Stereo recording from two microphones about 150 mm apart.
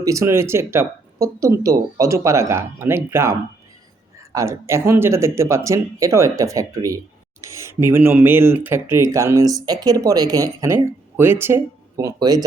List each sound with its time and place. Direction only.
0.0 s speech: 20° right (ahead or behind)
4.4 s speech: 20° right (ahead or behind)